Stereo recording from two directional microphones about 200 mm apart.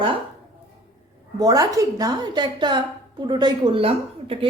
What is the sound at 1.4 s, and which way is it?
A woman's voice, 15° right (ahead or behind).